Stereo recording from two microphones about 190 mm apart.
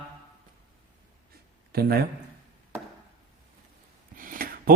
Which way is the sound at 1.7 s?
55° right (ahead or behind).